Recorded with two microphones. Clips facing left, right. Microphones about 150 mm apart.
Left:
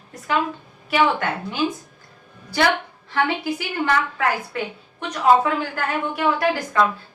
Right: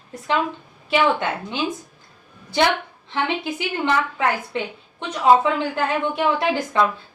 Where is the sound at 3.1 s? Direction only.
20° right (ahead or behind).